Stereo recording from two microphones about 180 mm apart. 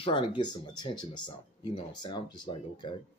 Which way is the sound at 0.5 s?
25° left (ahead or behind).